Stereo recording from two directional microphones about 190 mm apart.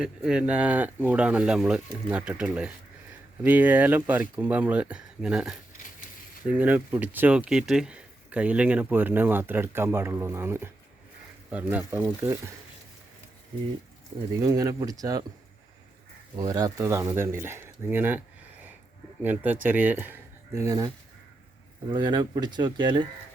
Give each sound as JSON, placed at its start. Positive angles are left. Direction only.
{"t": 0.0, "sound": "speech", "side_deg": -5}
{"t": 14.4, "sound": "speech", "side_deg": -20}
{"t": 16.3, "sound": "speech", "side_deg": -20}
{"t": 19.2, "sound": "speech", "side_deg": -10}